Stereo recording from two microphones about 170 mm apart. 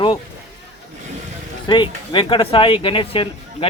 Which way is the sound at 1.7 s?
25° left (ahead or behind).